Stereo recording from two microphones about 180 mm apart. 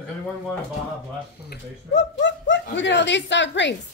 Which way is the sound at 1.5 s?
80° left.